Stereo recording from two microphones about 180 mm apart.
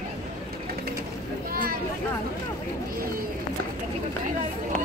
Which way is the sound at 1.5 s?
55° right (ahead or behind).